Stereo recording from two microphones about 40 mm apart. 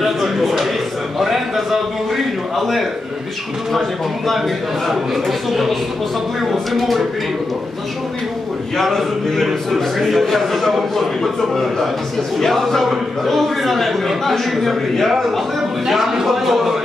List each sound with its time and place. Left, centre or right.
0.0 s a sound: centre
1.2 s a man's voice: centre
4.8 s a man's voice: centre
8.7 s a man's voice: centre
12.4 s a man's voice: centre